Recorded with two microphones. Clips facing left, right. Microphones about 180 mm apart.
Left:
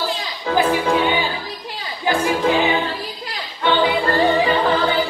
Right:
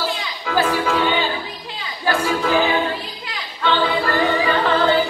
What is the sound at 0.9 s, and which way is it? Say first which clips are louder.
Music: left 1 dB; 15° left (ahead or behind).